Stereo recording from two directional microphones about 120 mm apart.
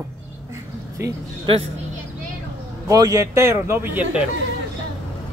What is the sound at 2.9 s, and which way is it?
Speech, 30° right (ahead or behind).